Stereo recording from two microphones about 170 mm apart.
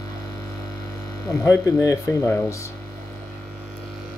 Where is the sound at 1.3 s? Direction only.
20° left (ahead or behind).